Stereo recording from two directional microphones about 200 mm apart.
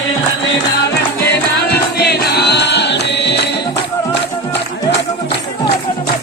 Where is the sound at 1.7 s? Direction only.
55° left (ahead or behind).